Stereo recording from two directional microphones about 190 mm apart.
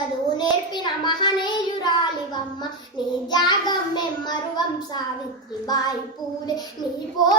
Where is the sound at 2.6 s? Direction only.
25° left (ahead or behind).